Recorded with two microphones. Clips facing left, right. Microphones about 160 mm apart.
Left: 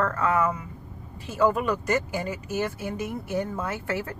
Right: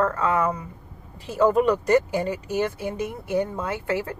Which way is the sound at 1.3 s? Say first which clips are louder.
Right 4 dB; 20° right (ahead or behind).